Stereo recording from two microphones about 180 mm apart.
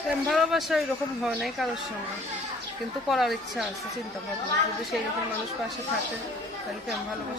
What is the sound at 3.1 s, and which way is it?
Speech, centre (ahead or behind).